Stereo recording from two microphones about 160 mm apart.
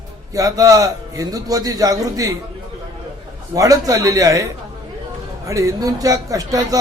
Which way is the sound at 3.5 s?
20° right (ahead or behind).